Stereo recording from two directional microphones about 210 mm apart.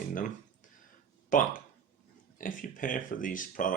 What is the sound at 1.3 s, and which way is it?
Speech, 40° left (ahead or behind).